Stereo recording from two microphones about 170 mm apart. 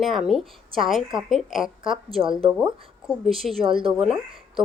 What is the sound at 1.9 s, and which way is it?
Speech, 35° right (ahead or behind).